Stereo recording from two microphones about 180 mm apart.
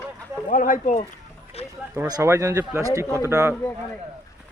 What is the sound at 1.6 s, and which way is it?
Run, 35° left (ahead or behind).